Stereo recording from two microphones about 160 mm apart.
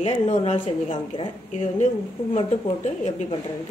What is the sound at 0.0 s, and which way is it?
Speech, 45° left (ahead or behind).